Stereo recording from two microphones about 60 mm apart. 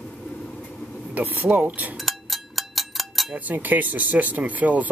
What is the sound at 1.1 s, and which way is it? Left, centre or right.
Speech, right.